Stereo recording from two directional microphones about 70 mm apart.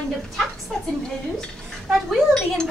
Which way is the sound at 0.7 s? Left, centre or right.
Centre.